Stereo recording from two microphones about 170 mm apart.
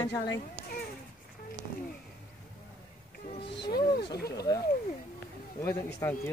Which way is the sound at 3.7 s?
65° left (ahead or behind).